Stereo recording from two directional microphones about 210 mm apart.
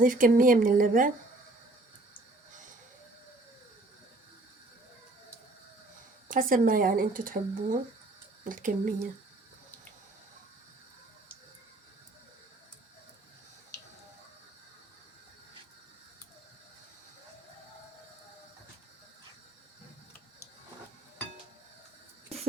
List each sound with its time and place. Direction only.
0.0 s speech: 40° right (ahead or behind)
6.2 s speech: 40° right (ahead or behind)